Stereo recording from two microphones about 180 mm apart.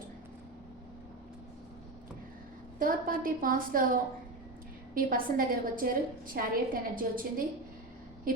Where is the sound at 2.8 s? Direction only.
50° right (ahead or behind).